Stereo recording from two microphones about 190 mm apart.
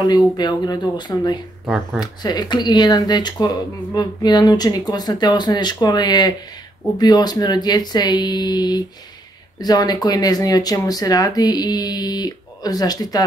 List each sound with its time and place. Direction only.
0.0 s speech: 20° left (ahead or behind)